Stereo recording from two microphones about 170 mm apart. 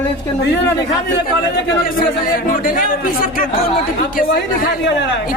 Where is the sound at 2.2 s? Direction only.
55° left (ahead or behind).